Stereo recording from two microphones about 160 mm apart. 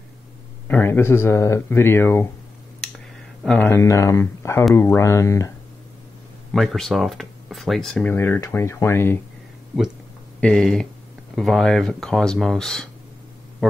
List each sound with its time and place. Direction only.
0.7 s speech: 15° left (ahead or behind)
3.4 s speech: 10° left (ahead or behind)
6.5 s speech: centre (ahead or behind)
10.4 s speech: 5° left (ahead or behind)